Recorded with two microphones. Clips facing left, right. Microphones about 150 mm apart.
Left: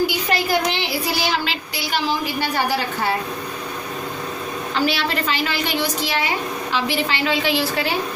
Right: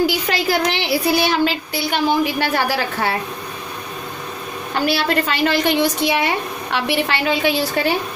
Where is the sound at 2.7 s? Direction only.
90° right.